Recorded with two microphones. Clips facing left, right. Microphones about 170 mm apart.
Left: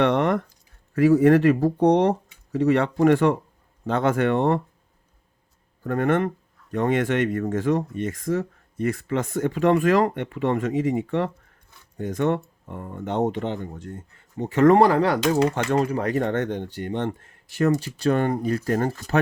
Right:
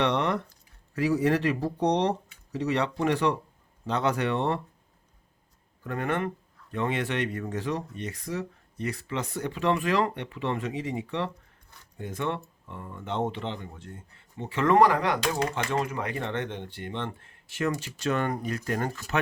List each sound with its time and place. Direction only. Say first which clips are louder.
0.0 s speech: left 6 dB; 50° left (ahead or behind)
5.8 s speech: left 7 dB; 45° left (ahead or behind)
14.8 s speech: left 4 dB; 30° left (ahead or behind)